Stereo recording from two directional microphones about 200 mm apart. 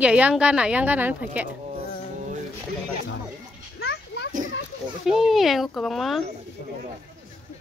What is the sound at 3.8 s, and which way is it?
Children playing, 60° left (ahead or behind).